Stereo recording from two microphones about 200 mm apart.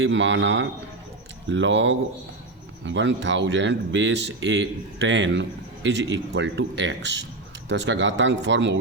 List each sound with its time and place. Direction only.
0.0 s speech: 65° right (ahead or behind)